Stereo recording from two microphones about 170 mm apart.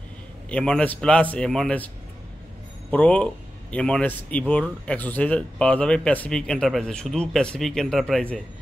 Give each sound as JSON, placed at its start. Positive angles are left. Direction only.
{"t": 0.5, "sound": "a man's voice", "side_deg": 5}
{"t": 2.9, "sound": "a man's voice", "side_deg": 5}